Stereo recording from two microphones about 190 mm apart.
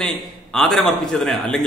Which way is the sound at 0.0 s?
5° left (ahead or behind).